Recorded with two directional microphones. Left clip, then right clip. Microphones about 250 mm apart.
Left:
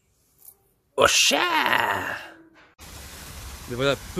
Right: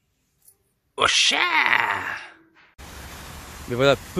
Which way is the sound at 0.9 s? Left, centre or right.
Centre.